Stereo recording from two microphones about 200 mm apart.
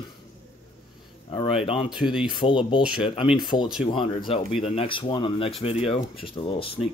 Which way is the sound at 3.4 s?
20° left (ahead or behind).